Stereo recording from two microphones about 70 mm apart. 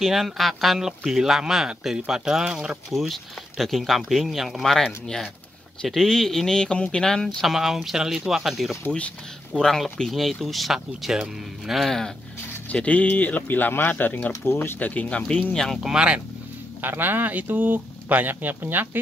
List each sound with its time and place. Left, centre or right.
0.0 s speech: centre
2.9 s speech: centre
7.2 s speech: centre
8.8 s speech: centre
9.5 s speech: centre
12.6 s speech: left
14.4 s speech: left
14.8 s speech: left; by 15.8 s centre
15.8 s speech: centre
16.8 s speech: right